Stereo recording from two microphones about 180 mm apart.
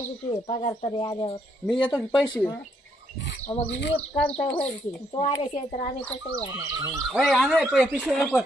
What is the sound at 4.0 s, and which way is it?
Speech, 5° left (ahead or behind).